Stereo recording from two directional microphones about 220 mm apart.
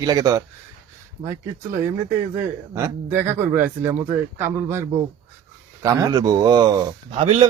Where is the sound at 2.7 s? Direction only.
10° right (ahead or behind).